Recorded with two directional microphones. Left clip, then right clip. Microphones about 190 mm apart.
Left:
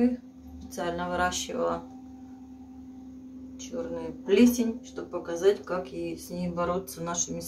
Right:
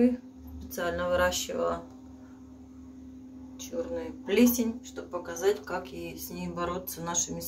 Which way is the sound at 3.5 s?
5° left (ahead or behind).